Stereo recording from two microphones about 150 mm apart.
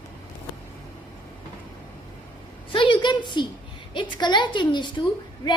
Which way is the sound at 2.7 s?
35° left (ahead or behind).